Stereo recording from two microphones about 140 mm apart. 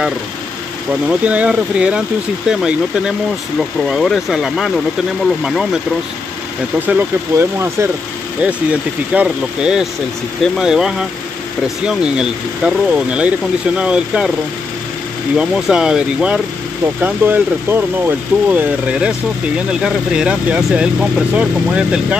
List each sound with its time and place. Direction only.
1.0 s speech: 10° right (ahead or behind)
6.9 s speech: 15° right (ahead or behind)
9.1 s speech: 10° right (ahead or behind)
15.3 s speech: 5° right (ahead or behind)